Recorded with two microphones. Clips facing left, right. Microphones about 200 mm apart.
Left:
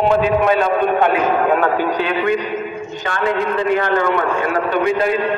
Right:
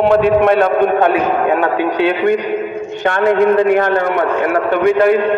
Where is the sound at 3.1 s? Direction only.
55° right (ahead or behind).